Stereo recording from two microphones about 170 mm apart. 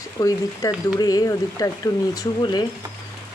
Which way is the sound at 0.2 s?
20° left (ahead or behind).